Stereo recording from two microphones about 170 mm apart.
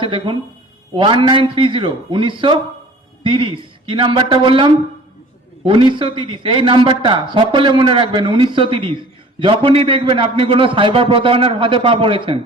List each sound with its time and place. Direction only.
0.0 s a man's voice: 30° right (ahead or behind)